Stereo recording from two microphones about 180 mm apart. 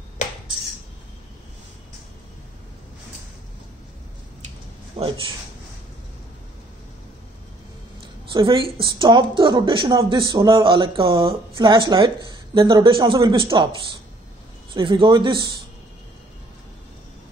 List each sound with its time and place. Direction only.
4.9 s speech: 30° right (ahead or behind)
8.3 s a woman's voice: 25° right (ahead or behind)
14.7 s a woman's voice: 25° right (ahead or behind)